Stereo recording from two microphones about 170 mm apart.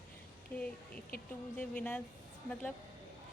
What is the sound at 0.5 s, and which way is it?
A child's voice, 10° left (ahead or behind).